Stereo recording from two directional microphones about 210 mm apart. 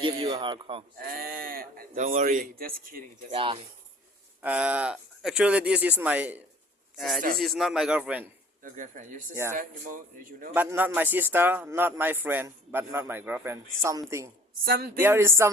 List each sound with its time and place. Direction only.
0.0 s speech: 25° right (ahead or behind)
1.1 s speech: 45° right (ahead or behind)
3.3 s speech: 25° right (ahead or behind)
4.4 s a man's voice: 5° right (ahead or behind)
8.6 s speech: 40° right (ahead or behind)
9.3 s speech: 15° right (ahead or behind)
9.6 s speech: 40° right (ahead or behind)
10.5 s speech: 10° right (ahead or behind)
14.7 s speech: 45° right (ahead or behind)
15.0 s speech: 10° right (ahead or behind)